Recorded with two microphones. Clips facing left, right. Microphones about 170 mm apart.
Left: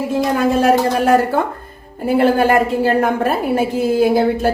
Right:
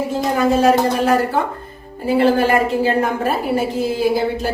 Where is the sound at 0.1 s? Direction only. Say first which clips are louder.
Left 2 dB; 55° left (ahead or behind).